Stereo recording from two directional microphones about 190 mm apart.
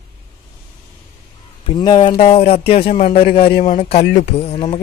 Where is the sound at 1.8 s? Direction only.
25° left (ahead or behind).